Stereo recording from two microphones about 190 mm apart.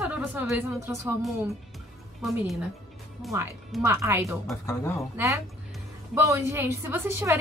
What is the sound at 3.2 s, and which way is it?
Speech, centre (ahead or behind).